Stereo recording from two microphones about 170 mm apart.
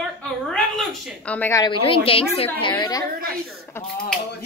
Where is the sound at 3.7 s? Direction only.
15° left (ahead or behind).